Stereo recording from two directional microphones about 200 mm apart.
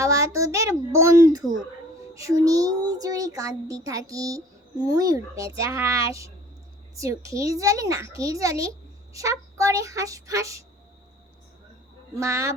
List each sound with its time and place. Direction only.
0.0 s a child's voice: 15° right (ahead or behind)
12.1 s a child's voice: 15° right (ahead or behind)